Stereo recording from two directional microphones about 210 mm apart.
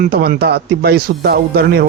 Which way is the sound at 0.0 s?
45° right (ahead or behind).